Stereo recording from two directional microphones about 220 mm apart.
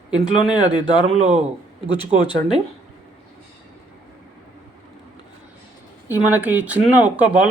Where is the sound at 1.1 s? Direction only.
30° right (ahead or behind).